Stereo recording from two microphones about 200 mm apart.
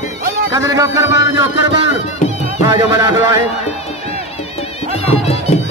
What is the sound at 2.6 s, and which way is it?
Music, 20° right (ahead or behind).